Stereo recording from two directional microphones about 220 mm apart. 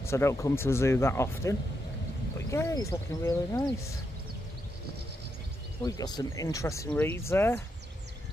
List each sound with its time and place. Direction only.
0.0 s speech: 10° left (ahead or behind)
5.8 s speech: 15° left (ahead or behind)